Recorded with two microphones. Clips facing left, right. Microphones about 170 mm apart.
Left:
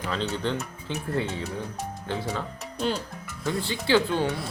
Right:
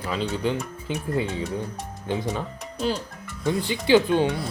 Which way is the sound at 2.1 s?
15° right (ahead or behind).